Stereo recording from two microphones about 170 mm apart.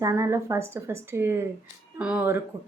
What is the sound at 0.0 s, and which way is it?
Speech, 15° right (ahead or behind).